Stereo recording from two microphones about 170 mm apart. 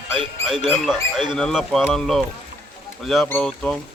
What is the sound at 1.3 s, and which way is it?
A man's voice, centre (ahead or behind).